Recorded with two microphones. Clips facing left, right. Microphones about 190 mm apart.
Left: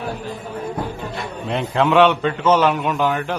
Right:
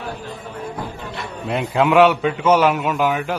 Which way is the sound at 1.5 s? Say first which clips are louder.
Right 1 dB; 5° right (ahead or behind).